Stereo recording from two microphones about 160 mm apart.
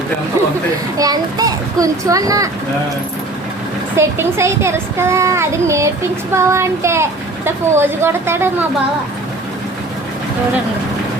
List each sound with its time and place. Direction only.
0.9 s a child's voice: 25° right (ahead or behind)
3.9 s a woman's voice: 15° right (ahead or behind)